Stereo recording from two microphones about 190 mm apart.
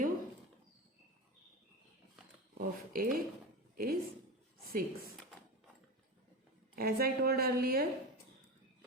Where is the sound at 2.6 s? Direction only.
50° right (ahead or behind).